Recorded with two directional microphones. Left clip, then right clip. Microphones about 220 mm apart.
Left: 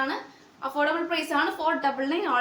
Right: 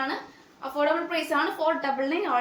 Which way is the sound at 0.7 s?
15° left (ahead or behind).